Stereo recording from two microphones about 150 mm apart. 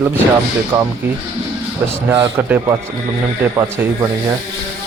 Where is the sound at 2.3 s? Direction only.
15° right (ahead or behind).